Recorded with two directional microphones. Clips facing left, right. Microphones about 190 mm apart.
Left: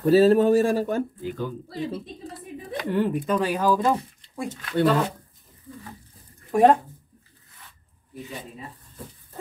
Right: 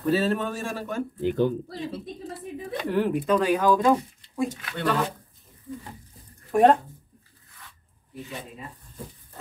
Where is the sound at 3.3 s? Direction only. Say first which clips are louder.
Right 4 dB; 5° left (ahead or behind).